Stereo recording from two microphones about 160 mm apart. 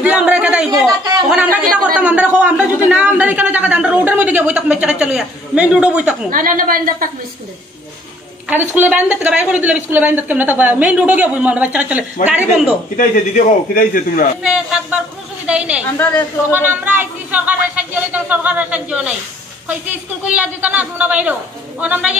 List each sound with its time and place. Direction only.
0.0 s a sound: 5° right (ahead or behind)
0.8 s a sound: 25° right (ahead or behind)
1.3 s speech: 10° right (ahead or behind)
6.3 s a woman's voice: 60° right (ahead or behind)
8.5 s speech: 10° right (ahead or behind)
12.9 s a man's voice: 60° left (ahead or behind)
14.4 s speech: 5° right (ahead or behind)
20.3 s speech: 10° right (ahead or behind)